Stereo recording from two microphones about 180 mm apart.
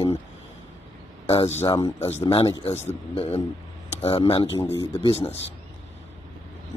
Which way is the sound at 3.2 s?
35° left (ahead or behind).